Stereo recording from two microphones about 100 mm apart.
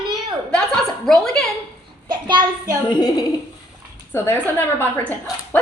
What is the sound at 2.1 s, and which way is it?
Child singing, 45° right (ahead or behind).